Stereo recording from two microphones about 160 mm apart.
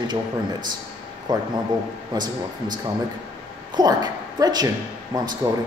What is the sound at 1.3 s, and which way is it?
A man's voice, 25° right (ahead or behind).